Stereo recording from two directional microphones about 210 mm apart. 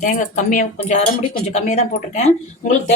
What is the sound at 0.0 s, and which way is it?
A woman's voice, 40° left (ahead or behind).